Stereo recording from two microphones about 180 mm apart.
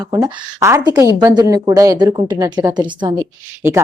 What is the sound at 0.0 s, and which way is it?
Speech, 20° right (ahead or behind).